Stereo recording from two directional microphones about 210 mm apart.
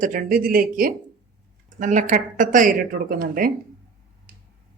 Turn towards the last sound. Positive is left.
turn(degrees=-40)  # may be behind; listen again after turning